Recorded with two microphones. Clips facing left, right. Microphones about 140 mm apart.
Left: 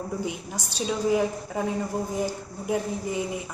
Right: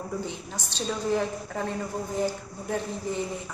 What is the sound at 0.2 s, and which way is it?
A woman's voice, 10° left (ahead or behind).